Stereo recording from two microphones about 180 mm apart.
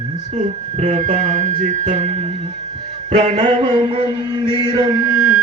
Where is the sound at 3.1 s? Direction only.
35° right (ahead or behind).